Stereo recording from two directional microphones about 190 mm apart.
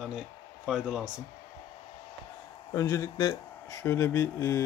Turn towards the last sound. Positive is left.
turn(degrees=15)  # may be behind; listen again after turning